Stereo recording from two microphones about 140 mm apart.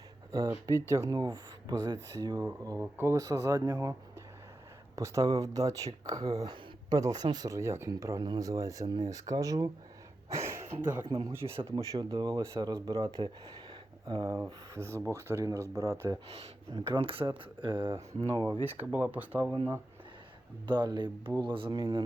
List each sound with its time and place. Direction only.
0.3 s speech: 20° right (ahead or behind)
2.4 s speech: 20° right (ahead or behind)
4.9 s speech: 20° right (ahead or behind)
10.2 s throat clearing: 20° right (ahead or behind)
11.0 s speech: 35° right (ahead or behind)
11.6 s speech: 25° right (ahead or behind)
14.3 s speech: 20° right (ahead or behind)
16.7 s speech: 35° right (ahead or behind)
18.6 s speech: 15° right (ahead or behind)
20.7 s speech: 30° right (ahead or behind)